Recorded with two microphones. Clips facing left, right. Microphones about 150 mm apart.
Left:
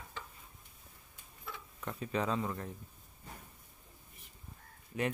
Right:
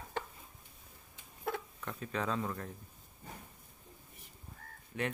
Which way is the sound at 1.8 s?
5° left (ahead or behind).